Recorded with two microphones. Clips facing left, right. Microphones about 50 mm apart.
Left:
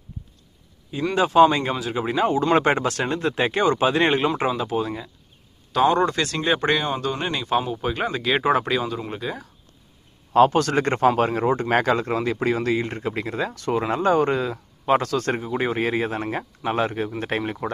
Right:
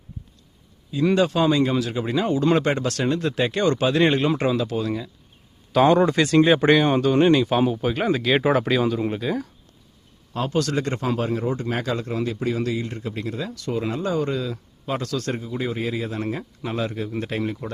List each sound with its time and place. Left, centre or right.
1.1 s speech: centre
2.6 s speech: left
5.9 s speech: centre
7.3 s speech: centre
10.5 s speech: left
16.4 s speech: left